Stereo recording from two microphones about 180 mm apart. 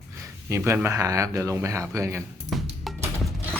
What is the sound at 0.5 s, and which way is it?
Speech, 15° right (ahead or behind).